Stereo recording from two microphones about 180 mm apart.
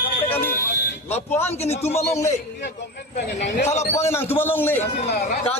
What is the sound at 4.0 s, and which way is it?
Speech, 15° left (ahead or behind).